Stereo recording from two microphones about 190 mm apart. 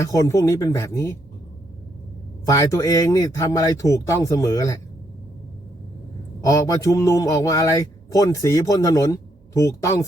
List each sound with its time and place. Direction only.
0.0 s a man's voice: 15° left (ahead or behind)
2.5 s a man's voice: 20° left (ahead or behind)
6.4 s a man's voice: 20° left (ahead or behind)